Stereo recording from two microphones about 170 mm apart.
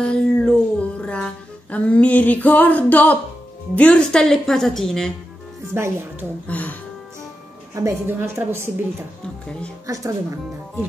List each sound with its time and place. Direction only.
0.0 s music: 5° left (ahead or behind)
3.7 s a woman's voice: 10° left (ahead or behind)
5.7 s a woman's voice: 15° right (ahead or behind)
6.4 s speech: 10° left (ahead or behind)
7.7 s a woman's voice: 15° right (ahead or behind)